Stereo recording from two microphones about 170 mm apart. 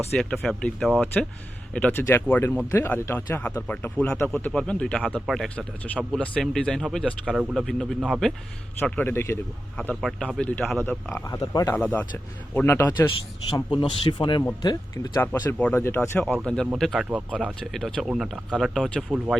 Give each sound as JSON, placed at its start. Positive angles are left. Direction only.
{"t": 0.2, "sound": "speech", "side_deg": 5}
{"t": 1.7, "sound": "speech", "side_deg": 10}
{"t": 8.8, "sound": "speech", "side_deg": 10}
{"t": 11.3, "sound": "speech", "side_deg": 20}
{"t": 11.8, "sound": "speech", "side_deg": 10}
{"t": 13.1, "sound": "speech", "side_deg": 30}
{"t": 15.2, "sound": "speech", "side_deg": 10}